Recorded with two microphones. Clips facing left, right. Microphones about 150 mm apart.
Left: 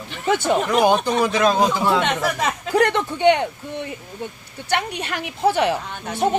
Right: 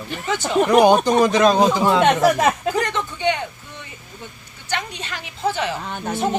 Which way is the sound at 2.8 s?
60° left (ahead or behind).